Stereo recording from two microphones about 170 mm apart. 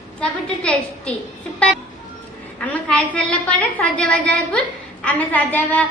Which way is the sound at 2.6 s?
5° left (ahead or behind).